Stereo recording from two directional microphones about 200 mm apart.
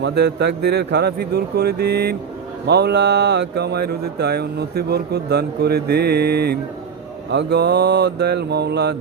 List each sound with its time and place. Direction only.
0.0 s speech: 55° right (ahead or behind)